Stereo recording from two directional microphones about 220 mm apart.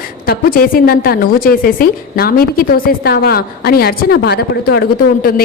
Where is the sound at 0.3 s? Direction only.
40° left (ahead or behind).